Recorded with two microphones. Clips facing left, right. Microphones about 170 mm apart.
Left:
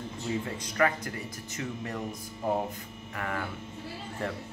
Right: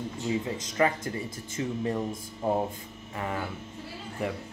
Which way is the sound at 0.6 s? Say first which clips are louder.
Right 1 dB; 20° right (ahead or behind).